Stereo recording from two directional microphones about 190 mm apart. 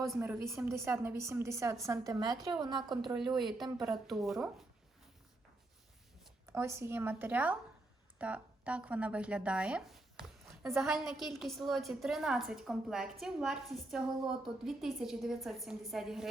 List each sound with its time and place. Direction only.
0.0 s speech: 5° right (ahead or behind)
0.4 s a woman's voice: 15° right (ahead or behind)
3.2 s speech: centre (ahead or behind)
6.4 s a woman's voice: 15° right (ahead or behind)